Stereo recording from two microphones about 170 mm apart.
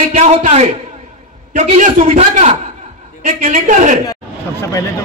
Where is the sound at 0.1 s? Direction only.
40° right (ahead or behind).